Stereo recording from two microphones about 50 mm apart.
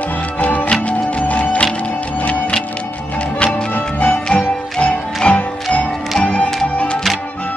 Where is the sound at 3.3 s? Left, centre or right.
Left.